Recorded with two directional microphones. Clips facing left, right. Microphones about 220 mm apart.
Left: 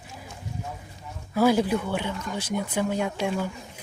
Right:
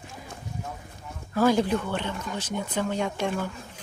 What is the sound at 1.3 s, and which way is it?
Speech, 10° left (ahead or behind).